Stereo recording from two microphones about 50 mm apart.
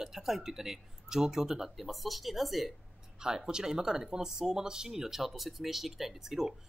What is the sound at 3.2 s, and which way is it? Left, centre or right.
Speech, centre.